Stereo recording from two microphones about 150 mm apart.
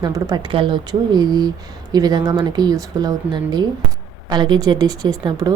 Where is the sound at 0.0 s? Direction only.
30° right (ahead or behind).